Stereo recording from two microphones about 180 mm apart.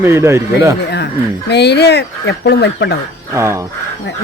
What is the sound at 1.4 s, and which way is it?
Speech, 70° left (ahead or behind).